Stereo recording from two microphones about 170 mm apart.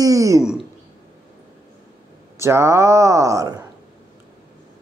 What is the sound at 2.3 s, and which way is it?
Speech, 15° right (ahead or behind).